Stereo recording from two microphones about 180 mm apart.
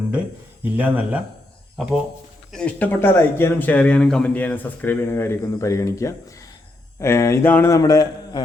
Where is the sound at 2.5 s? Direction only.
5° left (ahead or behind).